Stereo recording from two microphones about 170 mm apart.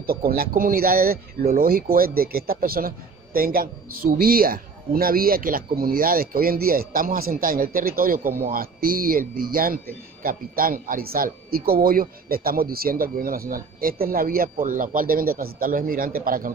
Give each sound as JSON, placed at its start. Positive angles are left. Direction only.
{"t": 0.0, "sound": "a man's voice", "side_deg": -60}